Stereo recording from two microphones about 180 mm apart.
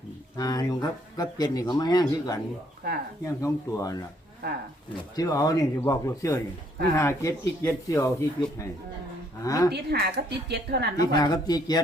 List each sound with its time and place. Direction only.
0.3 s speech: 20° left (ahead or behind)
4.4 s speech: 60° right (ahead or behind)
5.1 s speech: 20° left (ahead or behind)
9.7 s speech: 65° right (ahead or behind)
11.0 s speech: 20° left (ahead or behind)